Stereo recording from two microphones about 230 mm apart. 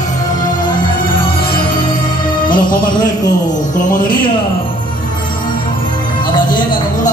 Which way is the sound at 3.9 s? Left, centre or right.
Left.